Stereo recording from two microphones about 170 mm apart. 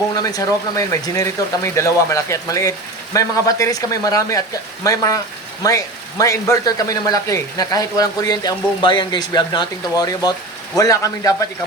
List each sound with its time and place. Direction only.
0.2 s speech: 20° left (ahead or behind)